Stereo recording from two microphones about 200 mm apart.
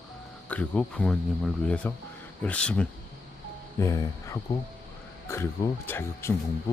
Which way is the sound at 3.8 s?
15° left (ahead or behind).